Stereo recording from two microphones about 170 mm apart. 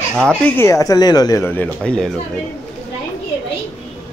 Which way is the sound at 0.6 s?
20° left (ahead or behind).